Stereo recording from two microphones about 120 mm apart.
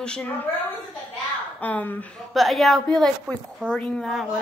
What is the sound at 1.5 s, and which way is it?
Speech, 15° left (ahead or behind).